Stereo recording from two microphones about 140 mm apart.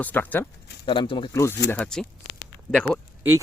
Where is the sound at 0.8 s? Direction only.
35° left (ahead or behind).